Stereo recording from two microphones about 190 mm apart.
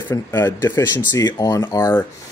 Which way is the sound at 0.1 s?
15° left (ahead or behind).